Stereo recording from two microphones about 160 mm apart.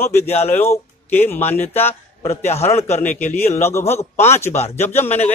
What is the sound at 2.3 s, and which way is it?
Speech, 40° left (ahead or behind).